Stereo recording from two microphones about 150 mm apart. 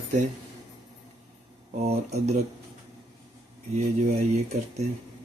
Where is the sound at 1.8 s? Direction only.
45° right (ahead or behind).